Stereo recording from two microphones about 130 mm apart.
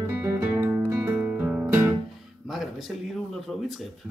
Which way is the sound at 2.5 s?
Centre (ahead or behind).